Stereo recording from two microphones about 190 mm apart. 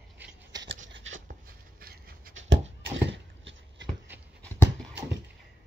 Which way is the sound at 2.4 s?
85° right.